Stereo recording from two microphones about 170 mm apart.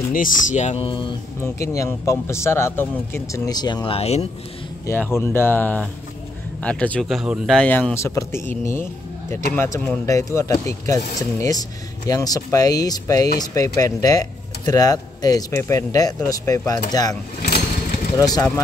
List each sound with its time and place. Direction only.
0.1 s speech: 50° left (ahead or behind); by 1.1 s 30° left (ahead or behind)
1.4 s a man's voice: 20° left (ahead or behind); by 4.3 s 35° left (ahead or behind)
4.8 s a man's voice: 15° left (ahead or behind)
17.6 s vehicle: 50° left (ahead or behind)
18.1 s a man's voice: 20° left (ahead or behind)